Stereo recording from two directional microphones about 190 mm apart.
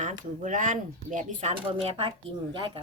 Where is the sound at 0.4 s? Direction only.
45° right (ahead or behind).